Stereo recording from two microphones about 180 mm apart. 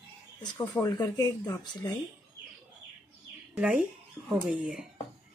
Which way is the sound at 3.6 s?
5° right (ahead or behind).